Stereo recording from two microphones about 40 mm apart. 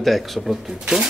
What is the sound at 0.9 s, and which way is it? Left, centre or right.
Speech, centre.